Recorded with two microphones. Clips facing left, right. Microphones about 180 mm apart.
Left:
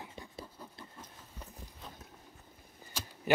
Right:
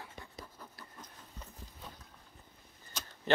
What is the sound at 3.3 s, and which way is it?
Speech, 10° left (ahead or behind).